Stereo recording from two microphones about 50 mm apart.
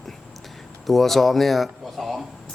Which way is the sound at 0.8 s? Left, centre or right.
Centre.